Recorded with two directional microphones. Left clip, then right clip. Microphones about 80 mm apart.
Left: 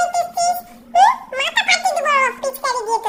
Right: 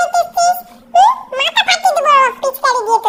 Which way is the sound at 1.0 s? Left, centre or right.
Right.